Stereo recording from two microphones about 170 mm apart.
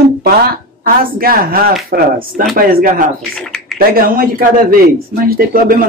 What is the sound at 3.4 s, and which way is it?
Speech, 5° left (ahead or behind).